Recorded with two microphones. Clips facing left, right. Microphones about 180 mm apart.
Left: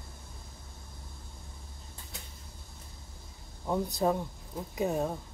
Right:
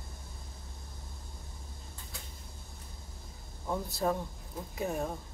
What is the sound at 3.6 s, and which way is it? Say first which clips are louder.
Speech: left 3 dB; 15° left (ahead or behind).